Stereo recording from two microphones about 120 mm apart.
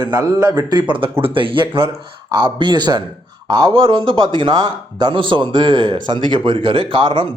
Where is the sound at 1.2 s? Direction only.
45° right (ahead or behind).